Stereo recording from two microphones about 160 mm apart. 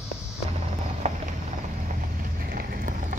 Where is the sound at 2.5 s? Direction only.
60° right (ahead or behind).